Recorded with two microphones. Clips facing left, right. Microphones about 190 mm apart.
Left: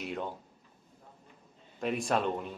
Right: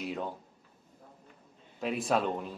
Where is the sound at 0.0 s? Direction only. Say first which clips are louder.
Right 1 dB; centre (ahead or behind).